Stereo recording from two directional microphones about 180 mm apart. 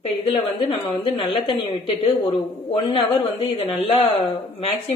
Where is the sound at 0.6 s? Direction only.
25° left (ahead or behind).